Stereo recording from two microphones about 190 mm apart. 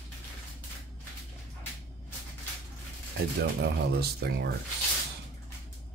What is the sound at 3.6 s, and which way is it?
Speech, 55° right (ahead or behind).